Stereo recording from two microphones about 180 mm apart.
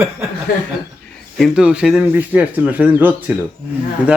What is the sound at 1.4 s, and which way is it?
A man's voice, 5° right (ahead or behind).